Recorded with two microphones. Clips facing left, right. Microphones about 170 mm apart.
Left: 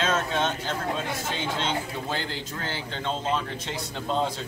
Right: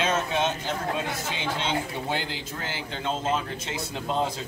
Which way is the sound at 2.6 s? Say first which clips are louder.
Even; 5° right (ahead or behind).